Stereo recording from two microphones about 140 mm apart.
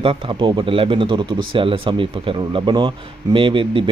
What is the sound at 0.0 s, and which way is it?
Speech, 40° right (ahead or behind).